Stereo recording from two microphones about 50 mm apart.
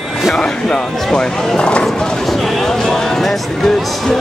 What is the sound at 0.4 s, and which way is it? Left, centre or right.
Speech, centre.